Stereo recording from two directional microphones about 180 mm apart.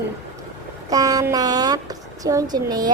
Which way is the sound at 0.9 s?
20° right (ahead or behind).